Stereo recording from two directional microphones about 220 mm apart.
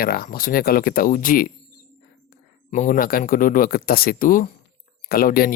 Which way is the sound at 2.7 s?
35° left (ahead or behind).